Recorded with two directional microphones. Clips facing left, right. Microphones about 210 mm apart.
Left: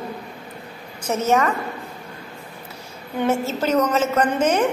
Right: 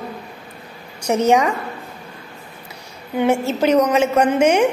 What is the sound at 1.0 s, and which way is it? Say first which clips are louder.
Speech: right 4 dB; 15° right (ahead or behind).